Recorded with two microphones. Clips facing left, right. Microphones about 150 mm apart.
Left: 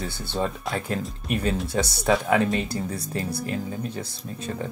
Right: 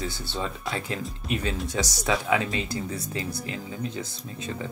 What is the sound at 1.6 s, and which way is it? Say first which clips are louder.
Speech: left 4 dB; 60° left (ahead or behind).